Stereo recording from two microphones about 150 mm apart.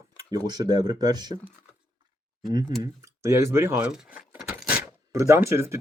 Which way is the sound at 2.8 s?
20° right (ahead or behind).